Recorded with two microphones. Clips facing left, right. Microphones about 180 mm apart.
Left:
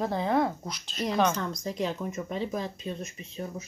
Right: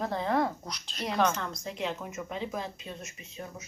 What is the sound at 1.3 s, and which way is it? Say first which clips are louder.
Speech: left 4 dB; 35° left (ahead or behind).